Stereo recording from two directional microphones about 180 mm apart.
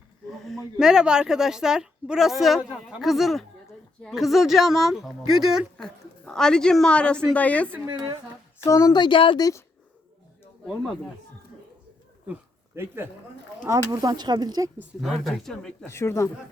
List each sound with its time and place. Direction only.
0.4 s a woman's voice: centre (ahead or behind)
7.9 s speech: 25° right (ahead or behind)
8.5 s speech: 15° left (ahead or behind)
10.7 s speech: centre (ahead or behind)
12.3 s a sound: 10° right (ahead or behind)
13.7 s speech: 15° right (ahead or behind)
15.0 s speech: centre (ahead or behind)